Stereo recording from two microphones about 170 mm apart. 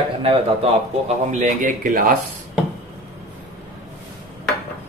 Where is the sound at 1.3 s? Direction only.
45° right (ahead or behind).